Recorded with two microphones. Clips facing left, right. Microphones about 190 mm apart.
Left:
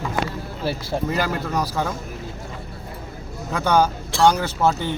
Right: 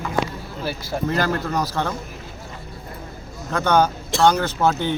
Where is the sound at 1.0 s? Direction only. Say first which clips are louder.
Right 4 dB; 10° left (ahead or behind).